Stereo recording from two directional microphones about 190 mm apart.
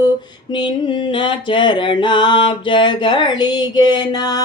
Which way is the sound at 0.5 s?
25° left (ahead or behind).